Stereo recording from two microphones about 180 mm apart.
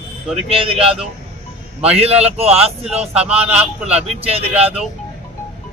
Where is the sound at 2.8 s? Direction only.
5° right (ahead or behind).